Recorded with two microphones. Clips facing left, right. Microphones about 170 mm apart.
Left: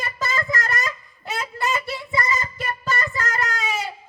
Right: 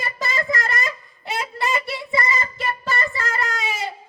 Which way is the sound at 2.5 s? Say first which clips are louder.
Right 1 dB; 30° right (ahead or behind).